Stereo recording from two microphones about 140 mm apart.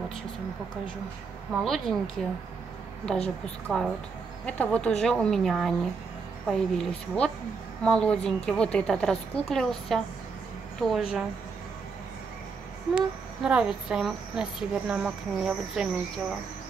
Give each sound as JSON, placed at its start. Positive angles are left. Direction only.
{"t": 1.5, "sound": "speech", "side_deg": 0}
{"t": 3.4, "sound": "speech", "side_deg": 5}
{"t": 12.9, "sound": "speech", "side_deg": -5}